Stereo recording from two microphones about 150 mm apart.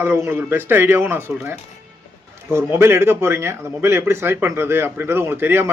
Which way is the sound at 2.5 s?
15° right (ahead or behind).